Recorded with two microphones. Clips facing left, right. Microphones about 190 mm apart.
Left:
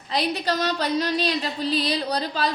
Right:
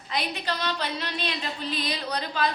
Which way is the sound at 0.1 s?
35° left (ahead or behind).